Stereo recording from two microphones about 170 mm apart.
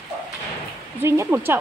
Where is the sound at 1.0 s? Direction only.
15° right (ahead or behind).